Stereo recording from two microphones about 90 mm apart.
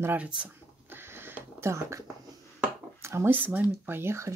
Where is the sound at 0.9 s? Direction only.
25° right (ahead or behind).